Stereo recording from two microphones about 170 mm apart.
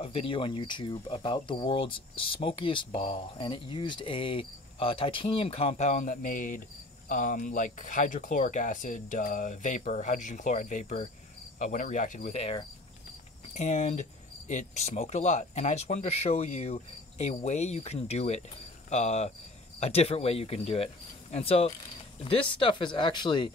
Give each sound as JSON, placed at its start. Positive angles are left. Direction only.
{"t": 0.0, "sound": "speech", "side_deg": 35}